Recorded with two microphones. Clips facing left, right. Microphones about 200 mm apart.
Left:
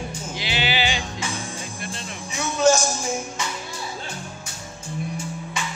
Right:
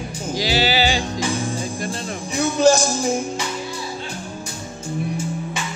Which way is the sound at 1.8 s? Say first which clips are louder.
Right 7 dB; 35° right (ahead or behind).